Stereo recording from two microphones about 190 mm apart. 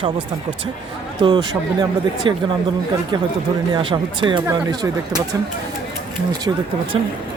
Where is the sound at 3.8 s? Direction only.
25° right (ahead or behind).